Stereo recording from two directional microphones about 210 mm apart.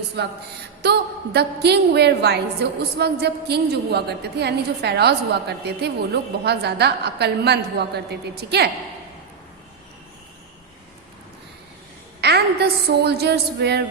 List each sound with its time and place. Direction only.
0.8 s a woman's voice: 50° right (ahead or behind)
12.2 s a woman's voice: 50° right (ahead or behind)